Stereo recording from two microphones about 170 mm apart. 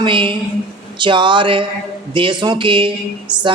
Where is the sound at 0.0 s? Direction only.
30° right (ahead or behind).